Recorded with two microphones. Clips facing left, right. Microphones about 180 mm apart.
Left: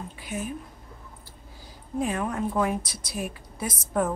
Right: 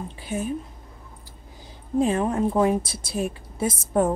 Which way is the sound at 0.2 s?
30° right (ahead or behind).